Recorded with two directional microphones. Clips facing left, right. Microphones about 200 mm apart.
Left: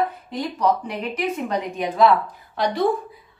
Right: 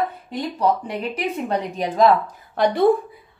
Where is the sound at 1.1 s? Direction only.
35° right (ahead or behind).